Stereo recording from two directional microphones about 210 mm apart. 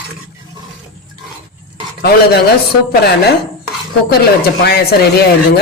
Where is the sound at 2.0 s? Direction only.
50° left (ahead or behind).